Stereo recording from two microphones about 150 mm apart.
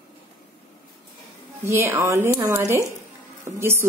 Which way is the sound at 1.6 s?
15° right (ahead or behind).